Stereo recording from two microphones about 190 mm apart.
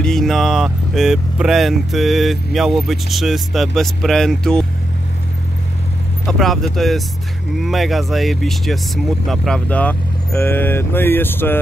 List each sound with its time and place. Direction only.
0.0 s speech: centre (ahead or behind)
6.2 s speech: centre (ahead or behind)